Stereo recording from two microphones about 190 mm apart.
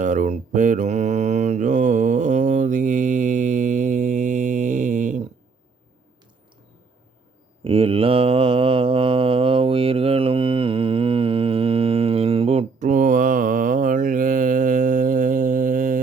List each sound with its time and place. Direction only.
0.0 s mantra: 40° right (ahead or behind)
7.6 s mantra: 30° right (ahead or behind); by 16.0 s 45° right (ahead or behind)